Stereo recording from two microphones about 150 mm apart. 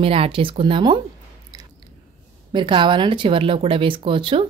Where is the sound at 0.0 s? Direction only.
40° right (ahead or behind).